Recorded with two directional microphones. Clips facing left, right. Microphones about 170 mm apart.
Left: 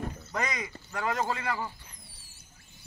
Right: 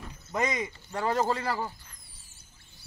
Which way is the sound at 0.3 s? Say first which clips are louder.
Right 6 dB; 25° right (ahead or behind).